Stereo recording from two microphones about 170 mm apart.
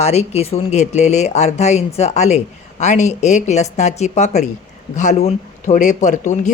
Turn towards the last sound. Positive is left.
turn(degrees=45)  # may be behind; listen again after turning